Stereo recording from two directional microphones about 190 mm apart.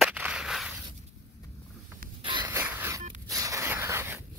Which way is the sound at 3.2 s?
15° right (ahead or behind).